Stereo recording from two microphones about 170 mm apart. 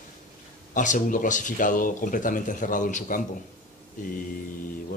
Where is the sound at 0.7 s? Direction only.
50° left (ahead or behind).